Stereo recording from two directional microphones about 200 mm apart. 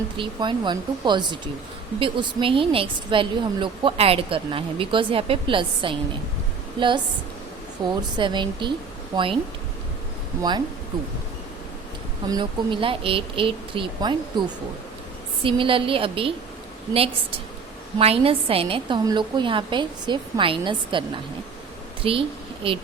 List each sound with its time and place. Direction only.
0.2 s a woman's voice: 25° right (ahead or behind)
12.3 s a woman's voice: 25° right (ahead or behind)
15.4 s a woman's voice: 25° right (ahead or behind)
18.0 s a woman's voice: 30° right (ahead or behind)
22.0 s a woman's voice: 25° right (ahead or behind)